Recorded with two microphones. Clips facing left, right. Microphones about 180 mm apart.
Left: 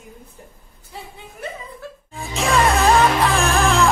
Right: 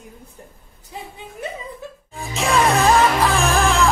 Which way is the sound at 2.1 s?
Centre (ahead or behind).